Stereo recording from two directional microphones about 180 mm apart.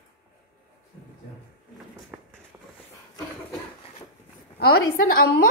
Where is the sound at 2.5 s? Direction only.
10° right (ahead or behind).